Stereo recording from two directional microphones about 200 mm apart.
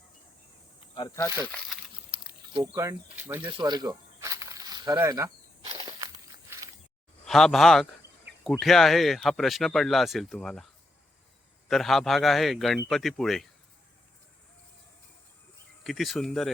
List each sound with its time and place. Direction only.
0.9 s speech: 15° left (ahead or behind)
1.5 s speech: centre (ahead or behind)
2.0 s snake: 25° right (ahead or behind)
3.6 s snake: 20° right (ahead or behind)
5.7 s walk: 20° right (ahead or behind)
6.5 s a sound: 10° right (ahead or behind)
7.3 s speech: centre (ahead or behind)
11.7 s speech: centre (ahead or behind)
15.8 s speech: centre (ahead or behind)